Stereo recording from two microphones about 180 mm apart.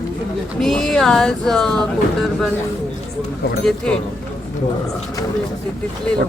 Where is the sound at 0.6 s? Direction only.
Centre (ahead or behind).